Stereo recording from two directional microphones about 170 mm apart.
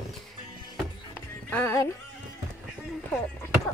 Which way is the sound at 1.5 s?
10° left (ahead or behind).